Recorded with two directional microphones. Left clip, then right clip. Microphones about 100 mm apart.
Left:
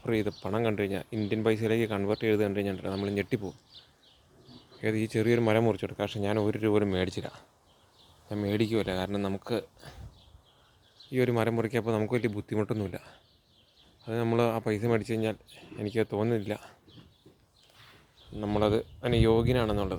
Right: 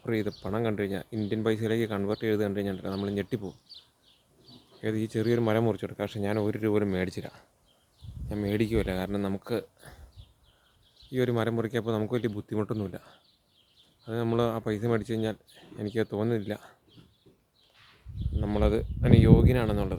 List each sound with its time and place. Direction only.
0.0 s speech: 15° right (ahead or behind)
4.8 s speech: 5° right (ahead or behind)
5.6 s speech: 20° right (ahead or behind)
8.3 s speech: 30° right (ahead or behind)
11.1 s a man's voice: 5° right (ahead or behind)
18.3 s speech: 15° right (ahead or behind)